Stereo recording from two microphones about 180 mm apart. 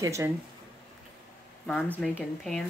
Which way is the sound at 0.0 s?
15° right (ahead or behind).